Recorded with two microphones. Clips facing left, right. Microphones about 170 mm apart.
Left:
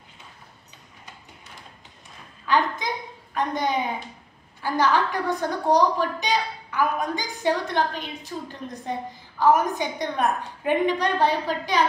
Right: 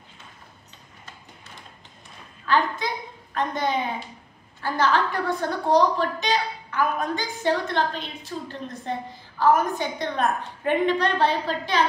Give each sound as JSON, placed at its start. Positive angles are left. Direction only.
{"t": 2.4, "sound": "a woman's voice", "side_deg": 15}